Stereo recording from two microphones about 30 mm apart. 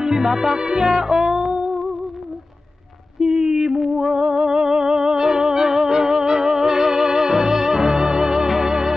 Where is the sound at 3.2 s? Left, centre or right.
Centre.